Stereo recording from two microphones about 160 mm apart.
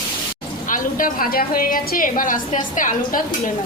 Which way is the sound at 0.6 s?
60° left (ahead or behind).